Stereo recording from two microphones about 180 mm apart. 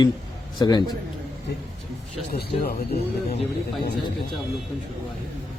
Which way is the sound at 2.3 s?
60° left (ahead or behind).